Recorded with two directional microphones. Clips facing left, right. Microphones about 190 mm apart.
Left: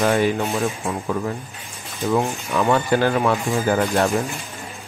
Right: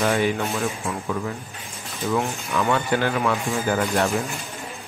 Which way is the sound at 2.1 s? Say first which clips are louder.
Left 3 dB; 30° left (ahead or behind).